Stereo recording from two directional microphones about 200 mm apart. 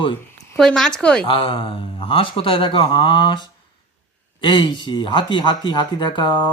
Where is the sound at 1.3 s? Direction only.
25° left (ahead or behind).